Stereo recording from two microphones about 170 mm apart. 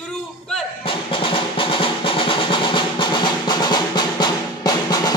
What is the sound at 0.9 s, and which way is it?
Drum, 30° left (ahead or behind).